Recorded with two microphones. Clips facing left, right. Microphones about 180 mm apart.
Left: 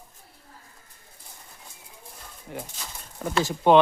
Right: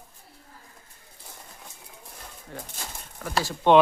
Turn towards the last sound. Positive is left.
turn(degrees=10)  # may be behind; listen again after turning